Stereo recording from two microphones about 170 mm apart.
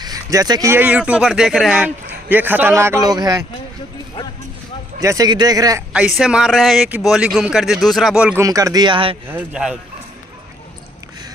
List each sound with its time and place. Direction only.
0.0 s speech: 20° right (ahead or behind)
5.0 s a man's voice: 20° right (ahead or behind)
5.9 s speech: 5° right (ahead or behind)
8.4 s a man's voice: 20° right (ahead or behind)
9.3 s speech: 10° right (ahead or behind)